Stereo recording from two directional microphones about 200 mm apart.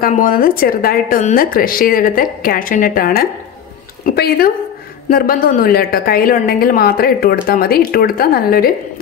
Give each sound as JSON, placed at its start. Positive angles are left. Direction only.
{"t": 0.0, "sound": "a woman's voice", "side_deg": 45}